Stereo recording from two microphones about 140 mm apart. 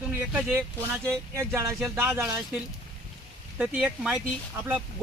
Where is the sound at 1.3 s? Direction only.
20° right (ahead or behind).